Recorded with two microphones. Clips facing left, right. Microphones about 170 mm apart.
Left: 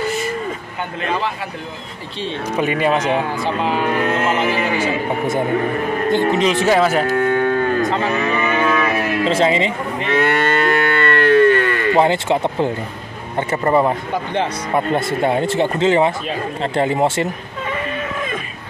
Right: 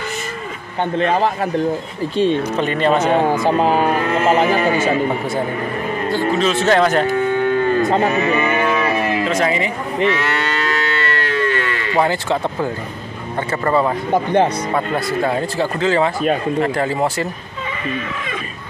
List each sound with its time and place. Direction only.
0.9 s speech: 35° right (ahead or behind)
2.5 s speech: 10° left (ahead or behind)
3.3 s speech: 45° right (ahead or behind)
6.0 s speech: 20° left (ahead or behind); by 7.9 s centre (ahead or behind)
9.2 s speech: 25° left (ahead or behind)
10.0 s moo: 55° left (ahead or behind)
12.0 s speech: 20° left (ahead or behind)
14.1 s speech: 45° right (ahead or behind)
14.7 s speech: 25° left (ahead or behind)